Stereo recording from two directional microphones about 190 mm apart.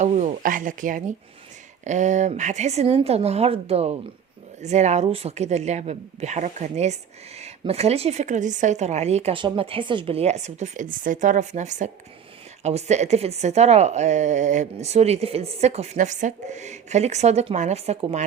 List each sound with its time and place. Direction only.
0.0 s speech: 40° right (ahead or behind)